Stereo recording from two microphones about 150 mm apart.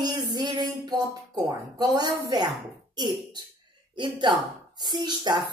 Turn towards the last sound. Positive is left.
turn(degrees=-30)  # may be behind; listen again after turning